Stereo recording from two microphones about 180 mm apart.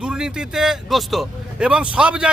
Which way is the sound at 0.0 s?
5° right (ahead or behind).